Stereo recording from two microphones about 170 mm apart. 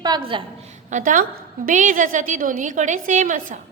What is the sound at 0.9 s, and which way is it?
A woman's voice, 50° right (ahead or behind).